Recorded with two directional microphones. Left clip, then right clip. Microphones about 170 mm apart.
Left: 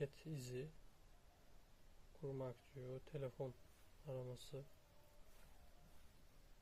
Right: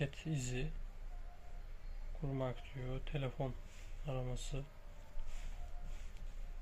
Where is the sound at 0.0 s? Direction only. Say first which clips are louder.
Right 6 dB; 90° left.